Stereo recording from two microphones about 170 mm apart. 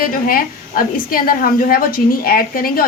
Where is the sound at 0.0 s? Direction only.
55° left (ahead or behind).